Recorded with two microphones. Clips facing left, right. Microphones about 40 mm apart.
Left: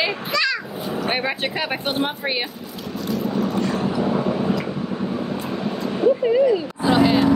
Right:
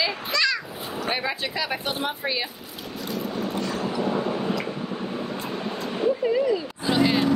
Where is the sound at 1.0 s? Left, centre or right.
Left.